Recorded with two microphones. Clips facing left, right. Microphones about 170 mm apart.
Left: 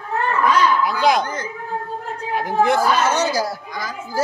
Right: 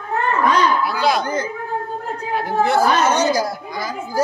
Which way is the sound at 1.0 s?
15° left (ahead or behind).